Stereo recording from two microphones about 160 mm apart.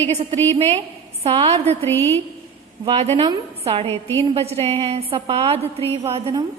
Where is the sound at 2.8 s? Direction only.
40° right (ahead or behind).